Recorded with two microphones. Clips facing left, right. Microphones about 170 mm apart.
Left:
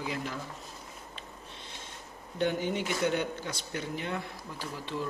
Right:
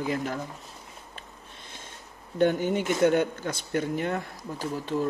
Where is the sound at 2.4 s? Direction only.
50° right (ahead or behind).